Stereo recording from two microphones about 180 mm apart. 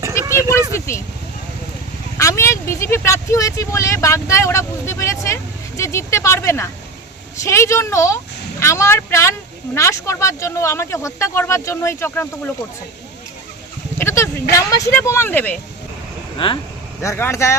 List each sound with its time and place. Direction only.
0.1 s vehicle: 15° left (ahead or behind)
0.7 s speech: 15° left (ahead or behind)
2.1 s speech: 15° left (ahead or behind)
14.0 s a sound: 15° left (ahead or behind)
14.5 s speech: 15° left (ahead or behind)
16.4 s speech: 30° left (ahead or behind)
17.0 s speech: 15° left (ahead or behind)